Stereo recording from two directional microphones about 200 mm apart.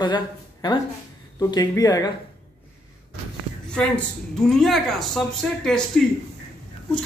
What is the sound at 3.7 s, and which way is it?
A woman's voice, 5° left (ahead or behind).